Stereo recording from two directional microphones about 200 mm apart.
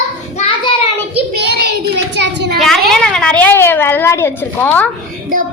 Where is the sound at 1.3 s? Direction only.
55° right (ahead or behind).